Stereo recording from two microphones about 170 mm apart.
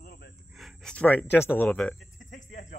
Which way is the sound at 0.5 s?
Centre (ahead or behind).